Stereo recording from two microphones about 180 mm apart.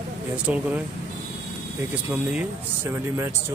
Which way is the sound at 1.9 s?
10° right (ahead or behind).